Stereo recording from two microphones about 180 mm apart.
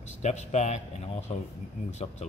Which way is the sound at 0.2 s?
40° left (ahead or behind).